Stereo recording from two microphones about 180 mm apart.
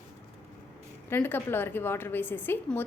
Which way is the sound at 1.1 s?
10° left (ahead or behind).